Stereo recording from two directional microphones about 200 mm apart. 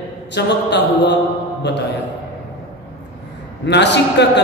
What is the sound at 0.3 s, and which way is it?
Speech, 60° left (ahead or behind).